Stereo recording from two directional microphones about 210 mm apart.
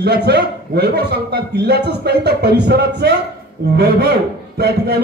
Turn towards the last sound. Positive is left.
turn(degrees=-50)  # may be behind; listen again after turning